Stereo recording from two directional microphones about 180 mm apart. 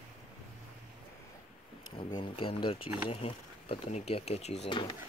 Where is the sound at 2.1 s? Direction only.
30° left (ahead or behind).